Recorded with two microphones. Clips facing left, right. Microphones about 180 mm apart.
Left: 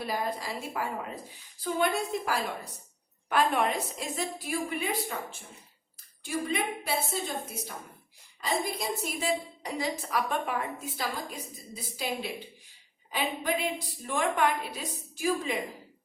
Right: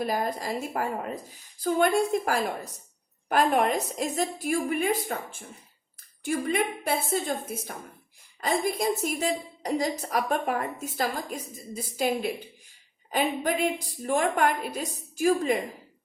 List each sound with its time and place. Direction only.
0.0 s a woman's voice: 45° right (ahead or behind)
6.2 s a woman's voice: 55° right (ahead or behind)